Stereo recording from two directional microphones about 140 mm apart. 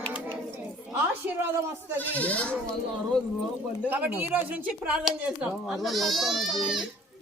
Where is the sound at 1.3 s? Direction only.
15° right (ahead or behind).